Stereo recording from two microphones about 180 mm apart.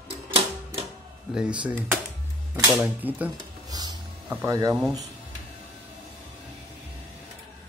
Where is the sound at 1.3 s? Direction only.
5° right (ahead or behind).